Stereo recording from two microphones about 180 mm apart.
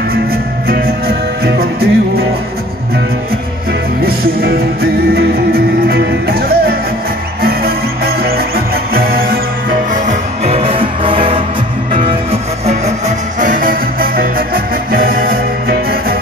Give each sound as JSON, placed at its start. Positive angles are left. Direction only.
{"t": 0.7, "sound": "music", "side_deg": -60}
{"t": 4.0, "sound": "music", "side_deg": -55}
{"t": 9.9, "sound": "music", "side_deg": -40}
{"t": 13.4, "sound": "music", "side_deg": -50}